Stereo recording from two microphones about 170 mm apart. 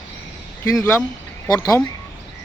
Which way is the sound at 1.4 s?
20° left (ahead or behind).